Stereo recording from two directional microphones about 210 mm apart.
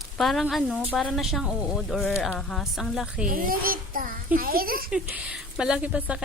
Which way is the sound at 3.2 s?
40° right (ahead or behind).